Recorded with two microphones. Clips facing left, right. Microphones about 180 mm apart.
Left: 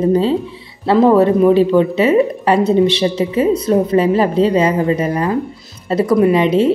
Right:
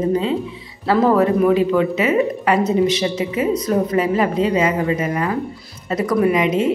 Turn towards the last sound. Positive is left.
turn(degrees=30)  # may be behind; listen again after turning